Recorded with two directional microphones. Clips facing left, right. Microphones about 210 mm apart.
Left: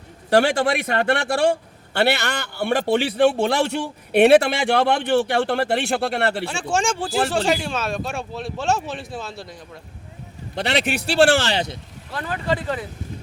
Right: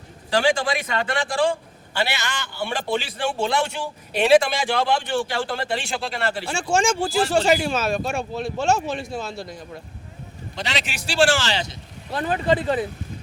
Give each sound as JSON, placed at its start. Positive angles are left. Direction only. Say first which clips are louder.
{"t": 0.3, "sound": "a man's voice", "louder": "left 3 dB", "side_deg": 65}
{"t": 6.4, "sound": "speech", "louder": "right 1 dB", "side_deg": 0}
{"t": 10.5, "sound": "a man's voice", "louder": "left 7 dB", "side_deg": 60}
{"t": 12.1, "sound": "speech", "louder": "right 4 dB", "side_deg": -20}